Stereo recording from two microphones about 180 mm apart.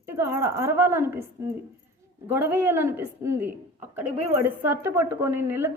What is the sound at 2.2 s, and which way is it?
A woman's voice, 10° right (ahead or behind).